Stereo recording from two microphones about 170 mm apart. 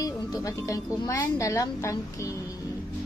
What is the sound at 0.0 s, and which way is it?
Speech, 20° left (ahead or behind).